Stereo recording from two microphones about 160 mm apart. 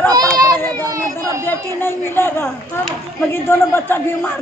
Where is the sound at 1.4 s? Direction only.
15° left (ahead or behind).